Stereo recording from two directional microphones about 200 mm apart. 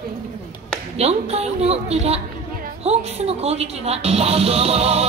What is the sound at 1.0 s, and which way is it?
A woman's voice, 30° right (ahead or behind).